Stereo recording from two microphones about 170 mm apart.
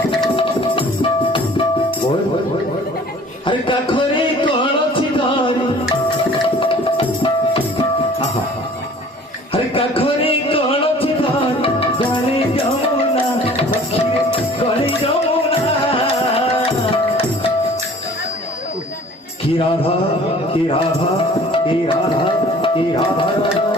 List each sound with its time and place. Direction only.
0.3 s music: 30° left (ahead or behind)
3.4 s a sound: 30° left (ahead or behind)
4.9 s music: 30° left (ahead or behind)
6.4 s tabla: 30° left (ahead or behind)
9.5 s music: 35° left (ahead or behind)
14.6 s music: 35° left (ahead or behind)
21.5 s tabla: 30° left (ahead or behind)